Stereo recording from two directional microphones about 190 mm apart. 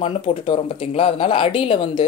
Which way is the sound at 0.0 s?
25° left (ahead or behind).